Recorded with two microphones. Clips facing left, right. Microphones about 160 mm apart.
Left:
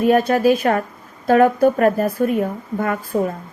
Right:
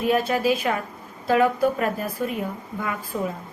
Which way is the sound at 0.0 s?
45° left (ahead or behind).